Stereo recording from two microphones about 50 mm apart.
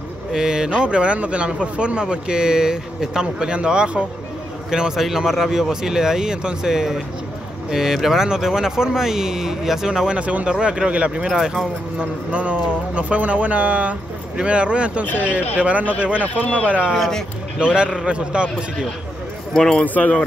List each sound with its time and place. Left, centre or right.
0.3 s speech: centre; by 15.9 s right
16.2 s speech: left
16.6 s speech: right
16.9 s speech: centre
18.0 s speech: right
19.5 s speech: centre
19.8 s speech: left